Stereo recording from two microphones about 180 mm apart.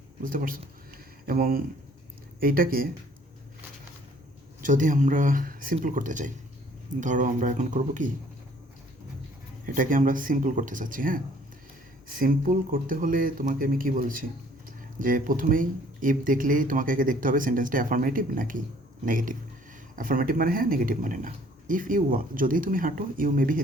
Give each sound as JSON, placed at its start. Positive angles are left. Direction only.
{"t": 0.2, "sound": "speech", "side_deg": -50}
{"t": 0.9, "sound": "a sound", "side_deg": -55}
{"t": 2.4, "sound": "speech", "side_deg": -55}
{"t": 4.6, "sound": "speech", "side_deg": -45}
{"t": 9.6, "sound": "speech", "side_deg": -50}